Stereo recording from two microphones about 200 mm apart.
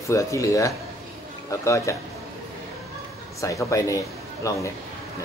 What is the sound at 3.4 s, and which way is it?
Speech, 15° left (ahead or behind).